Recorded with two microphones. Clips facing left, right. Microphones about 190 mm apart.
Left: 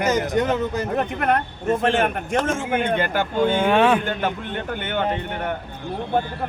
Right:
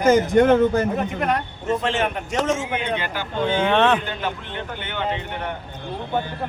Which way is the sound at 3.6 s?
10° left (ahead or behind).